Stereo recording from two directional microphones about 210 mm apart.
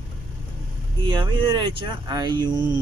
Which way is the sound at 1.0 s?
20° right (ahead or behind).